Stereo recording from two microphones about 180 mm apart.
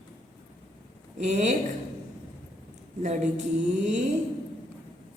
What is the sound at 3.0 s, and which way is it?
Speech, 40° right (ahead or behind).